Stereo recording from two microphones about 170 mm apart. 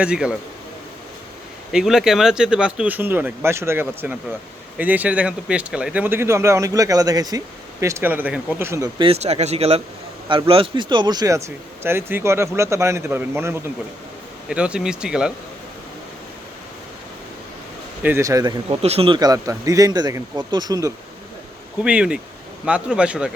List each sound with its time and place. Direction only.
0.0 s speech: 5° right (ahead or behind)
1.7 s speech: 5° right (ahead or behind)
9.0 s speech: 35° right (ahead or behind); by 15.3 s 5° right (ahead or behind)
18.0 s speech: 15° right (ahead or behind)
18.8 s speech: 35° right (ahead or behind); by 20.9 s 20° right (ahead or behind)
21.8 s speech: 5° right (ahead or behind)